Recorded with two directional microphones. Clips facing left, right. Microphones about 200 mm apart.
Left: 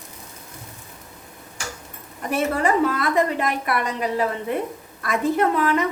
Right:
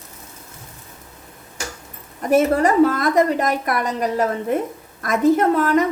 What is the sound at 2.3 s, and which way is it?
A woman's voice, 45° right (ahead or behind).